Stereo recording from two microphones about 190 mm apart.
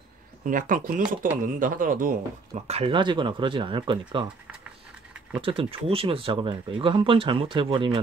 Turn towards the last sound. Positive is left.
turn(degrees=-25)  # may be behind; listen again after turning